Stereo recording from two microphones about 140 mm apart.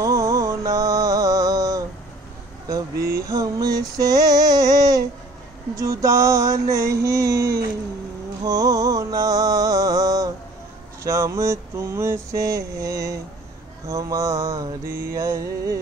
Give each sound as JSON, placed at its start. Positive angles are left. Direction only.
{"t": 0.0, "sound": "music", "side_deg": -25}
{"t": 3.0, "sound": "a sound", "side_deg": -90}
{"t": 3.3, "sound": "mantra", "side_deg": -25}
{"t": 3.9, "sound": "female singing", "side_deg": -25}
{"t": 5.8, "sound": "mantra", "side_deg": -25}
{"t": 8.5, "sound": "music", "side_deg": -25}
{"t": 11.1, "sound": "mantra", "side_deg": -20}